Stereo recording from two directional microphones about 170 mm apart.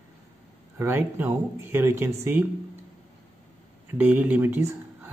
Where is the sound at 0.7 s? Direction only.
10° right (ahead or behind).